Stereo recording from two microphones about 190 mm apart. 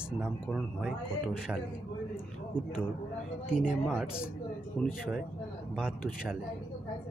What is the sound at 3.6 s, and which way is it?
Speech, 5° right (ahead or behind).